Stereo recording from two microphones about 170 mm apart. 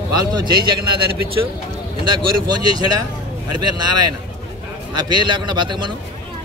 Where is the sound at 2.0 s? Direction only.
25° right (ahead or behind).